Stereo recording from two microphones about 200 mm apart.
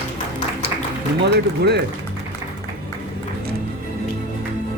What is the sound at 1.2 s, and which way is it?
Speech, 55° right (ahead or behind).